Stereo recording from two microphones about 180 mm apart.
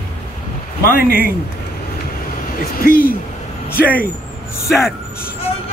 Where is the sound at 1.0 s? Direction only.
55° left (ahead or behind).